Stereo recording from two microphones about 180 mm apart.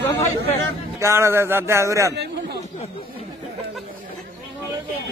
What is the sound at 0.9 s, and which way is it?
Speech, 15° right (ahead or behind).